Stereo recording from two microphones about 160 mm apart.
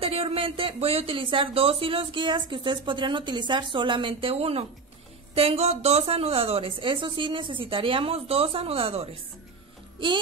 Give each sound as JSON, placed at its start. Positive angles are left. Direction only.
{"t": 0.0, "sound": "speech", "side_deg": -40}